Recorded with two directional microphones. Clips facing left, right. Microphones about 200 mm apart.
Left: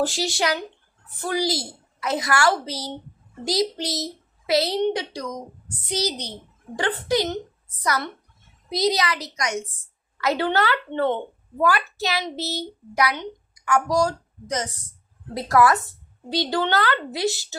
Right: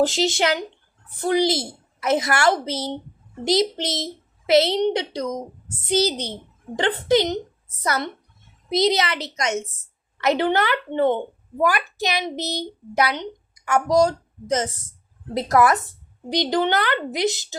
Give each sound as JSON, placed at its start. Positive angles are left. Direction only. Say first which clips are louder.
{"t": 0.0, "sound": "a woman's voice", "louder": "right 4 dB", "side_deg": -20}